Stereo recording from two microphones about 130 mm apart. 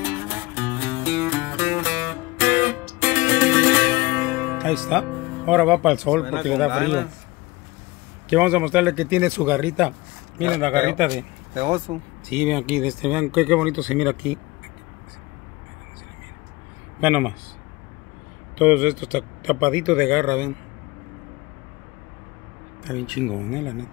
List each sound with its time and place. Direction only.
0.0 s music: 20° right (ahead or behind); by 7.0 s 5° right (ahead or behind)
8.3 s speech: 15° right (ahead or behind)
11.5 s speech: 55° right (ahead or behind)
12.3 s speech: 10° right (ahead or behind)
17.0 s speech: 10° right (ahead or behind)
18.6 s speech: 10° right (ahead or behind)
22.8 s speech: 5° right (ahead or behind)